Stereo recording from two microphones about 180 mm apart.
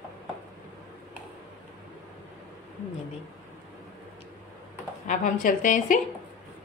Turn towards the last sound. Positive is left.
turn(degrees=50)  # may be behind; listen again after turning